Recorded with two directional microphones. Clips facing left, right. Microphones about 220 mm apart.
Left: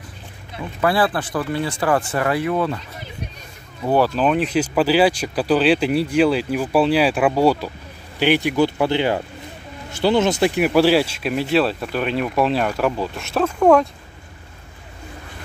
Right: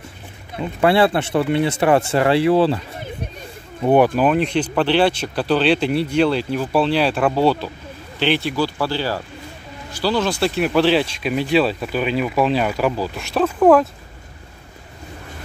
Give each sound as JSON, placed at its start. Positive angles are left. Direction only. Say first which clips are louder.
{"t": 0.6, "sound": "speech", "louder": "right 4 dB", "side_deg": -25}
{"t": 3.8, "sound": "speech", "louder": "right 4 dB", "side_deg": -20}
{"t": 4.2, "sound": "speech", "louder": "right 1 dB", "side_deg": 0}